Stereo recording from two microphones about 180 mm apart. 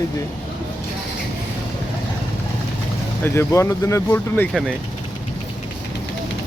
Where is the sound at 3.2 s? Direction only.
15° left (ahead or behind).